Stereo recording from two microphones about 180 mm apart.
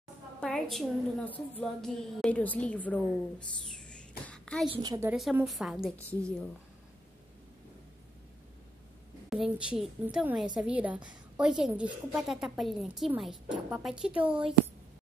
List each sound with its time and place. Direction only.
0.4 s a woman's voice: centre (ahead or behind)
4.6 s a woman's voice: 20° right (ahead or behind)
5.1 s a woman's voice: 5° right (ahead or behind)
9.3 s a woman's voice: 5° right (ahead or behind)
14.2 s a woman's voice: 30° right (ahead or behind)